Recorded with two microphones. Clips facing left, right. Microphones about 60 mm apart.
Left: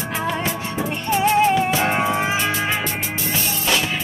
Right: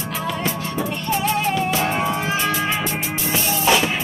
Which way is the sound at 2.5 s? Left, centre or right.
Centre.